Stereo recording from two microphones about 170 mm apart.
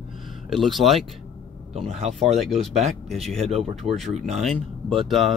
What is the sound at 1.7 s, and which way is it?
Speech, 35° right (ahead or behind).